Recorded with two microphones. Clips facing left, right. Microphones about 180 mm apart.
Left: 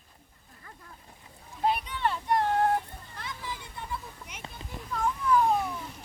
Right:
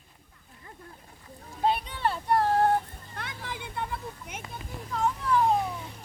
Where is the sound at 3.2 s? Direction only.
60° right (ahead or behind).